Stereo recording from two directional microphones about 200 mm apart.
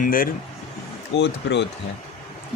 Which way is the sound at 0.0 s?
45° left (ahead or behind).